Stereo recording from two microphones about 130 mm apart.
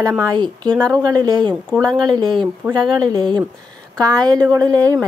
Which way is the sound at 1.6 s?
5° left (ahead or behind).